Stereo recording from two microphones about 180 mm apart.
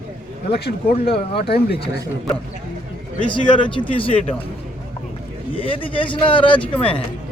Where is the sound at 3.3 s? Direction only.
25° left (ahead or behind).